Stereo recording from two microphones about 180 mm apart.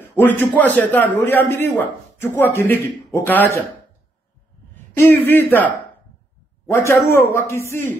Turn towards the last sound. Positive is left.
turn(degrees=15)  # may be behind; listen again after turning